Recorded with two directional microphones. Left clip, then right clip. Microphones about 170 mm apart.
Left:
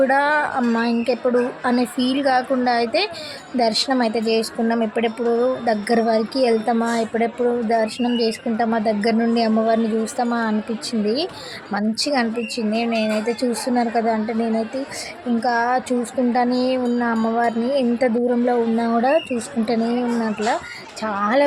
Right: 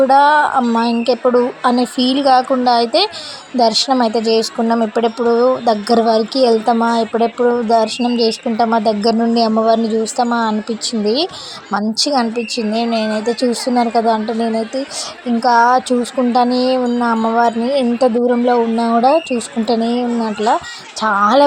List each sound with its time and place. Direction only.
0.1 s a woman's voice: 15° right (ahead or behind)